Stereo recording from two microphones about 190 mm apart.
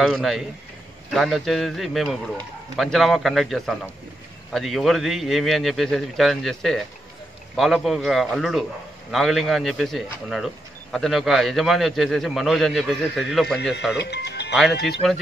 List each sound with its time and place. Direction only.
0.0 s speech: centre (ahead or behind)
13.9 s speech: 60° left (ahead or behind)